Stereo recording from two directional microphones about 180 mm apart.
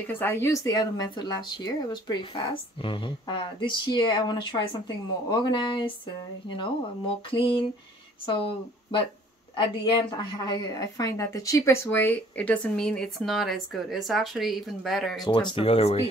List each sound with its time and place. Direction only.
0.0 s speech: 10° left (ahead or behind); by 9.0 s 30° left (ahead or behind)
10.1 s speech: 25° left (ahead or behind); by 15.2 s centre (ahead or behind)
15.5 s speech: 30° left (ahead or behind)